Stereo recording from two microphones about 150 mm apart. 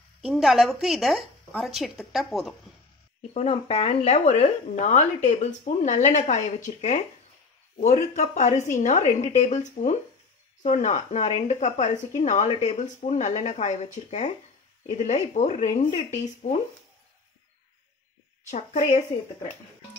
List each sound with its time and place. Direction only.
0.2 s speech: centre (ahead or behind)
3.2 s speech: 45° left (ahead or behind)
6.7 s speech: 40° left (ahead or behind)
7.8 s speech: 50° left (ahead or behind)
18.5 s speech: 55° left (ahead or behind)